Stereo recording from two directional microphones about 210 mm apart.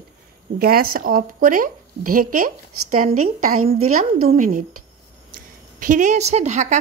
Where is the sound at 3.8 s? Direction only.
90° right.